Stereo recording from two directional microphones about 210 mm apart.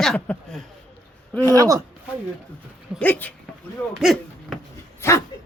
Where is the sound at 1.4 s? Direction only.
15° right (ahead or behind).